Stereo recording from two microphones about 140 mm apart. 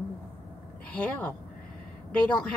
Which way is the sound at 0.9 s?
10° left (ahead or behind).